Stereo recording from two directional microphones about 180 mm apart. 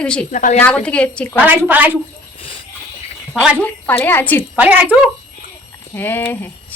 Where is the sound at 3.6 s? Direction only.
10° left (ahead or behind).